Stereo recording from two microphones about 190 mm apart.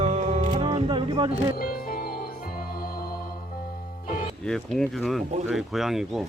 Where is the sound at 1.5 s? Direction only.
50° left (ahead or behind).